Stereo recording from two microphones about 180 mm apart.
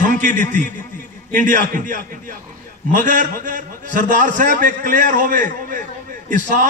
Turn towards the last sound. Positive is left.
turn(degrees=-45)  # may be behind; listen again after turning